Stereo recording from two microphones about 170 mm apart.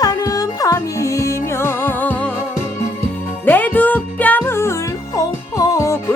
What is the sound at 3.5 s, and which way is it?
Music, 10° left (ahead or behind).